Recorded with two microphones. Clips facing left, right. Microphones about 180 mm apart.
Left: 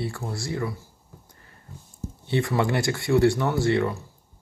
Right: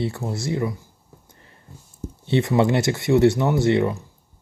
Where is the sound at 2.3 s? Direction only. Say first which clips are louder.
Right 5 dB; 20° right (ahead or behind).